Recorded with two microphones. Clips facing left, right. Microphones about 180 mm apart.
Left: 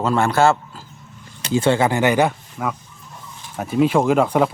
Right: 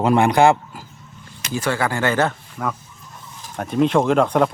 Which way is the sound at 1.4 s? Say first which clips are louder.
Left 5 dB; 25° left (ahead or behind).